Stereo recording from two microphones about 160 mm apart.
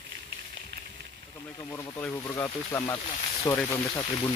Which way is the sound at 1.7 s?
20° left (ahead or behind).